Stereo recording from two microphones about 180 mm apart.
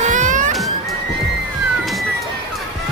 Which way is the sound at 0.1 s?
45° right (ahead or behind).